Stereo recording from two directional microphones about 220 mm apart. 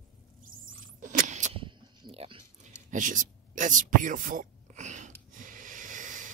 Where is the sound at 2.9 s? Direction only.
35° right (ahead or behind).